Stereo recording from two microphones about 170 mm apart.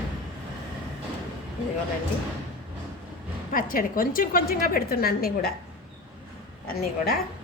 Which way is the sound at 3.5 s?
55° left (ahead or behind).